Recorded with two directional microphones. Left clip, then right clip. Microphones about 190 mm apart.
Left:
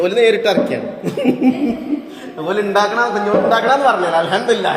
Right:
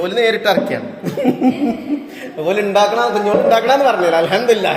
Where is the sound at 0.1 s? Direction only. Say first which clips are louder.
Left 1 dB; 25° right (ahead or behind).